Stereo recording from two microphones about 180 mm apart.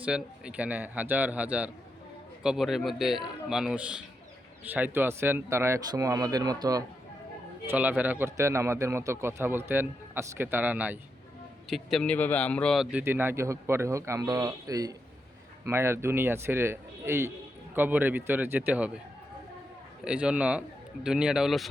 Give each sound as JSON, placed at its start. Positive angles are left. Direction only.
{"t": 0.0, "sound": "a man's voice", "side_deg": -5}
{"t": 7.7, "sound": "a man's voice", "side_deg": -10}
{"t": 20.1, "sound": "a man's voice", "side_deg": -5}